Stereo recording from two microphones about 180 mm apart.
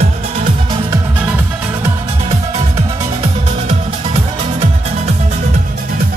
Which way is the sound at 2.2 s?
35° right (ahead or behind).